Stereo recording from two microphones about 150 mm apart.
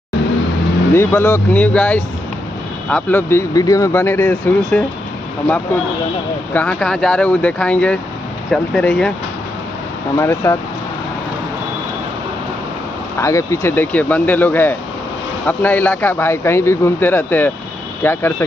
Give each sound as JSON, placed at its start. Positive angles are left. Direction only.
{"t": 0.9, "sound": "a man's voice", "side_deg": 15}
{"t": 6.5, "sound": "a man's voice", "side_deg": 10}
{"t": 10.1, "sound": "a man's voice", "side_deg": 15}
{"t": 13.2, "sound": "a man's voice", "side_deg": 20}